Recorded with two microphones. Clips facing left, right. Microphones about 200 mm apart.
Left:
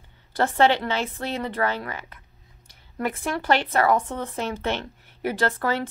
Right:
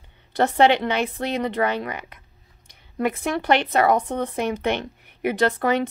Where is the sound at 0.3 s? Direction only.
20° right (ahead or behind).